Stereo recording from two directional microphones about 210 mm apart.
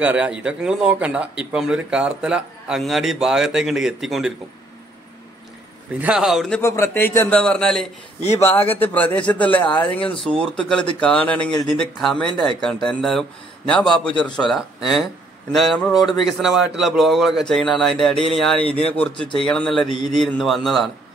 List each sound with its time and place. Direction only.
0.0 s speech: 5° right (ahead or behind)
5.9 s speech: 5° right (ahead or behind)
6.6 s a man's voice: 10° left (ahead or behind)
8.2 s speech: 30° left (ahead or behind)
8.7 s a man's voice: 10° left (ahead or behind)
9.5 s speech: 20° left (ahead or behind)
10.2 s a man's voice: 5° left (ahead or behind)